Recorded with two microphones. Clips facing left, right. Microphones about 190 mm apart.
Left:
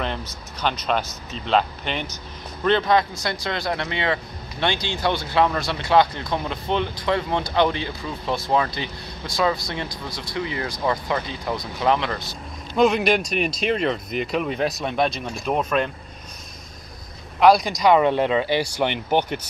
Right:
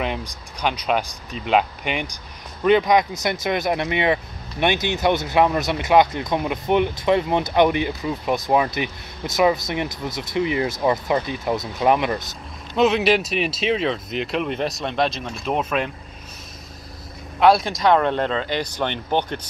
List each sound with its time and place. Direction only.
0.0 s speech: 10° right (ahead or behind)
12.7 s speech: centre (ahead or behind)
17.4 s speech: centre (ahead or behind)